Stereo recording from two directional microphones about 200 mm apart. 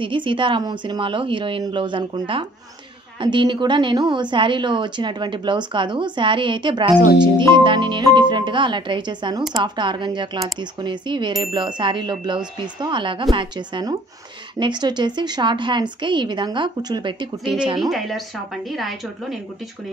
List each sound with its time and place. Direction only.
0.0 s a woman's voice: 25° right (ahead or behind)
17.7 s speech: centre (ahead or behind)